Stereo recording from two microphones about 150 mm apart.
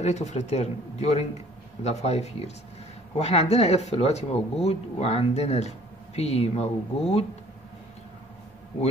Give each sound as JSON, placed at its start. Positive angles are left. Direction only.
{"t": 0.0, "sound": "speech", "side_deg": 50}